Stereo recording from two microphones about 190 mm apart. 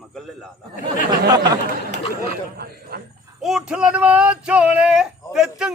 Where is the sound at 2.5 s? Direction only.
55° right (ahead or behind).